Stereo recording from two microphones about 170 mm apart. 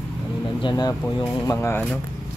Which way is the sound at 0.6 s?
25° left (ahead or behind).